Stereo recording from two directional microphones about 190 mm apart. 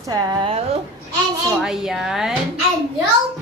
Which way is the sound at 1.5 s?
5° right (ahead or behind).